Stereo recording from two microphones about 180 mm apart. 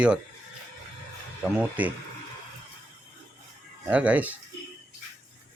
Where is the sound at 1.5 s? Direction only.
10° right (ahead or behind).